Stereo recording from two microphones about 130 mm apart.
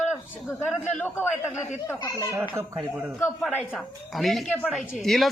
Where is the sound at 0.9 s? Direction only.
15° left (ahead or behind).